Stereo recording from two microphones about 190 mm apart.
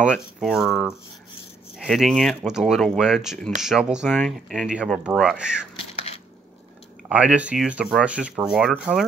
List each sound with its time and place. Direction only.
0.0 s speech: 5° right (ahead or behind)
7.1 s speech: 5° right (ahead or behind)